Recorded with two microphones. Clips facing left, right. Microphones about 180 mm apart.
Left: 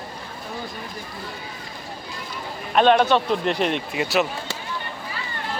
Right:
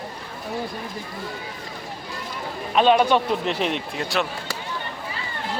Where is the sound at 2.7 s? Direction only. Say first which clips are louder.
Left 1 dB; 5° right (ahead or behind).